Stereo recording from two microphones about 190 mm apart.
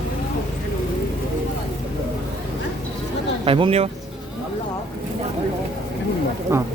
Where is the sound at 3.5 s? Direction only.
30° right (ahead or behind).